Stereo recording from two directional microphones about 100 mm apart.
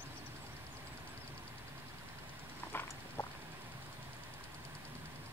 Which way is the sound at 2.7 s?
20° left (ahead or behind).